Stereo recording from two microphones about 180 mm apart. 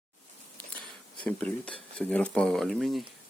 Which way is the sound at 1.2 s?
10° left (ahead or behind).